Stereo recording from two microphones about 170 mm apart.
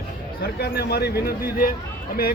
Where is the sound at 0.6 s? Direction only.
70° left (ahead or behind).